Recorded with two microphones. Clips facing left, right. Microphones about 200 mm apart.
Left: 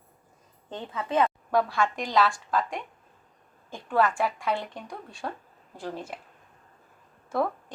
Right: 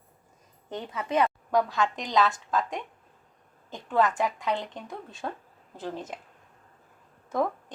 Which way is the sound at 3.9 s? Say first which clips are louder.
Even; 20° right (ahead or behind).